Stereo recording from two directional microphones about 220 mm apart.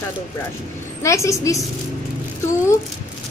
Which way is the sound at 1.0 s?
15° left (ahead or behind).